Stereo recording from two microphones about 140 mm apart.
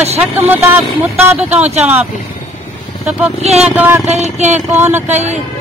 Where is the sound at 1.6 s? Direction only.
50° right (ahead or behind).